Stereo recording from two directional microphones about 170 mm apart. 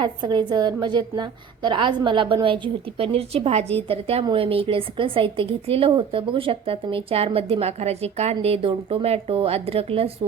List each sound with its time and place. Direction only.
0.0 s a woman's voice: 25° right (ahead or behind)